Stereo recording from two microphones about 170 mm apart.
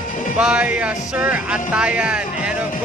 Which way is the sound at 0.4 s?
5° right (ahead or behind).